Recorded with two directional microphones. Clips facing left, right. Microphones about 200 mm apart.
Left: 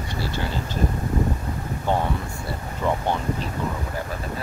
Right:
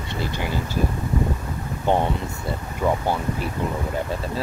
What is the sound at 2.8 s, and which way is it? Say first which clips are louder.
Speech: right 2 dB; 10° right (ahead or behind).